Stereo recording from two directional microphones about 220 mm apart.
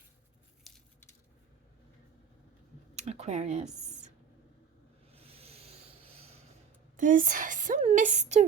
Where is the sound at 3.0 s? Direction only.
30° right (ahead or behind).